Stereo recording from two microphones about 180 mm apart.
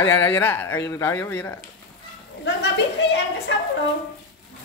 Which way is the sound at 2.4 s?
70° left (ahead or behind).